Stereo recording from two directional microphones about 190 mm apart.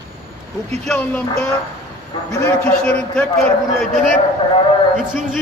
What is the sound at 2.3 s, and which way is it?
Speech, 15° left (ahead or behind).